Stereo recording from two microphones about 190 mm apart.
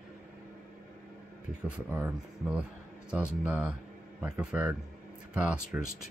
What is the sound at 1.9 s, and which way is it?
Speech, 5° right (ahead or behind).